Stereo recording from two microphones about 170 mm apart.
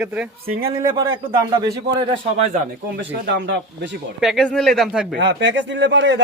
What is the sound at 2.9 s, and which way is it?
Speech, 90° right.